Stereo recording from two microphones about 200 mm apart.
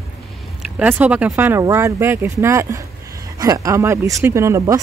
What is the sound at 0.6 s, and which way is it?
Speech, 10° right (ahead or behind).